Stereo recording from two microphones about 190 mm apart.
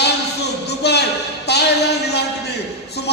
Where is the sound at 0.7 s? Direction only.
60° left (ahead or behind).